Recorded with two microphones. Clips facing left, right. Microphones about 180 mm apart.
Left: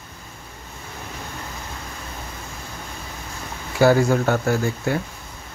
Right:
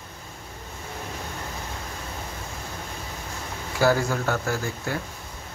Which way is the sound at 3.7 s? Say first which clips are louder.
Left 6 dB; 25° left (ahead or behind).